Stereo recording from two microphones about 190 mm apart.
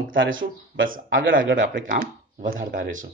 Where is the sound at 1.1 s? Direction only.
80° right.